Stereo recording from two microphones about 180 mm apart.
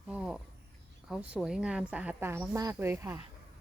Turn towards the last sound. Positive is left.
turn(degrees=-15)  # may be behind; listen again after turning